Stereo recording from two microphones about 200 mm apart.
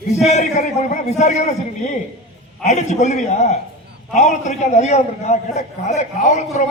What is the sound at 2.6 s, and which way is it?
A man's voice, 35° left (ahead or behind).